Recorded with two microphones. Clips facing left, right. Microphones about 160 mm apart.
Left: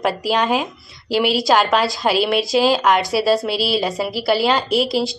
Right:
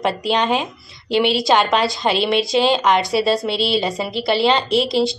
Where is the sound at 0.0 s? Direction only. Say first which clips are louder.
Even; 5° left (ahead or behind).